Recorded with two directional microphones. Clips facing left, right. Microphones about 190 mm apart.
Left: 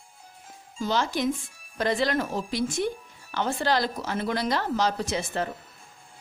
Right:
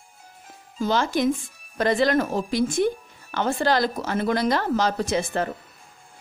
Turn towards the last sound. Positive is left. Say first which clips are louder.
# right 4 dB
turn(degrees=-50)  # may be behind; listen again after turning